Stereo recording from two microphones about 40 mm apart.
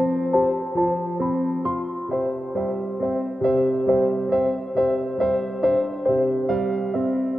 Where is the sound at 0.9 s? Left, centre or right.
Right.